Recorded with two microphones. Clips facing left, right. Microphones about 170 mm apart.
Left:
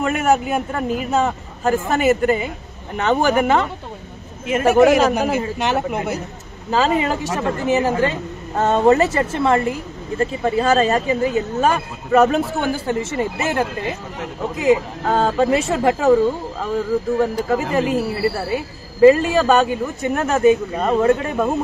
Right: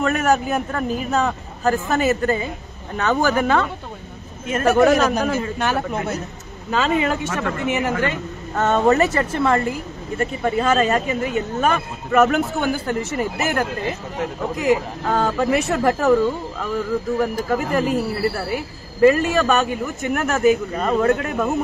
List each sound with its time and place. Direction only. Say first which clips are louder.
0.0 s a man's voice: left 1 dB; 10° left (ahead or behind); by 2.0 s 25° left (ahead or behind)
2.0 s a woman's voice: left 3 dB; 10° left (ahead or behind)
3.0 s a woman's voice: left 2 dB; 25° left (ahead or behind)
6.7 s a woman's voice: left 2 dB; 35° left (ahead or behind)
17.2 s a woman's voice: left 2 dB; 25° left (ahead or behind)